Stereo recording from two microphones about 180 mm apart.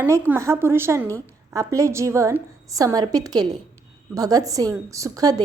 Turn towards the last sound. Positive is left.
turn(degrees=-20)  # may be behind; listen again after turning